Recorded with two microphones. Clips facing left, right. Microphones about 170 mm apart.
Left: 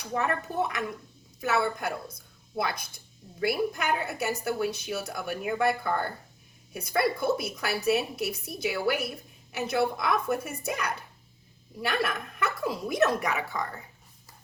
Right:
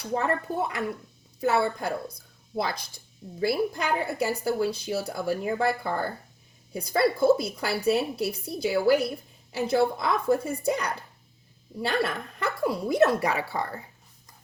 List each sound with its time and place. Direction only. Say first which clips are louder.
0.1 s a woman's voice: right 2 dB; 30° right (ahead or behind)
3.4 s a woman's voice: right 2 dB; 25° right (ahead or behind)
11.8 s a woman's voice: right 2 dB; 25° right (ahead or behind)